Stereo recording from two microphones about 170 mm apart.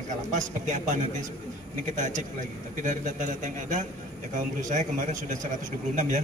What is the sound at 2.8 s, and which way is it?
A man's voice, 50° right (ahead or behind).